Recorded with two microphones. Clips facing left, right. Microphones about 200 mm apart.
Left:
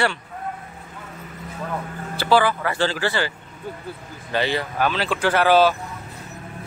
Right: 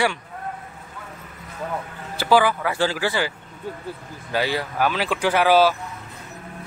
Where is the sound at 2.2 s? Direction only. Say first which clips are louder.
Even; 10° right (ahead or behind).